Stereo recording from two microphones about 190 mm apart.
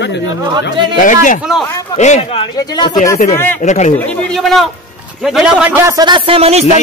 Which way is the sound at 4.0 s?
5° left (ahead or behind).